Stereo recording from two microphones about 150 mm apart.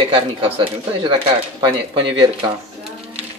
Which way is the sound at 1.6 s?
35° right (ahead or behind).